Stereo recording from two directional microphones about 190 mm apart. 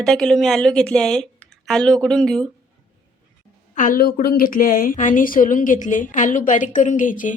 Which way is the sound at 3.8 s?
50° left (ahead or behind).